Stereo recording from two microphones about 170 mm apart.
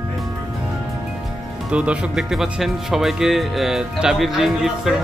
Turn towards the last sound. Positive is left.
turn(degrees=0)  # may be behind; listen again after turning